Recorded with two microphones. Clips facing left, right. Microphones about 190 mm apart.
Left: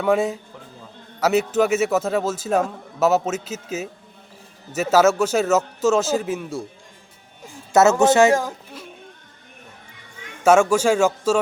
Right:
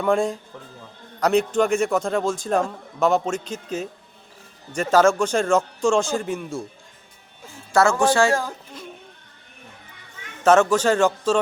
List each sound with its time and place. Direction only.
0.0 s a man's voice: 5° left (ahead or behind)
7.7 s speech: 20° left (ahead or behind)
10.4 s a man's voice: 10° left (ahead or behind)